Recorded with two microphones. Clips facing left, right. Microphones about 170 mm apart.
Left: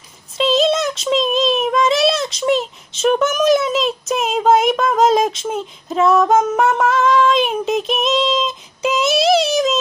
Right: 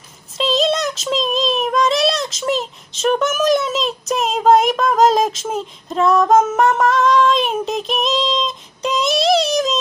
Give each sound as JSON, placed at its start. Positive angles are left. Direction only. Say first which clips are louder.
{"t": 0.3, "sound": "a child's voice", "louder": "left 2 dB", "side_deg": 0}